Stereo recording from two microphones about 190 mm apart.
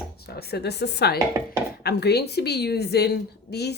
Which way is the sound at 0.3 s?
55° left (ahead or behind).